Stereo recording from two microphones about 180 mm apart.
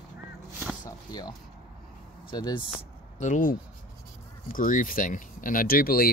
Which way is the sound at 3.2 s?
45° left (ahead or behind).